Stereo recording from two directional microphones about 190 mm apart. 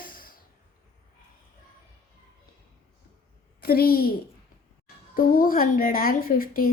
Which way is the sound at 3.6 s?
50° left (ahead or behind).